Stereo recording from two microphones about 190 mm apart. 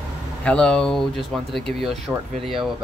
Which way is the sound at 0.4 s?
5° left (ahead or behind).